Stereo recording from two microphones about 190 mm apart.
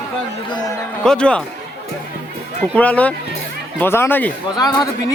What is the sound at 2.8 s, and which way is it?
Speech, 10° left (ahead or behind).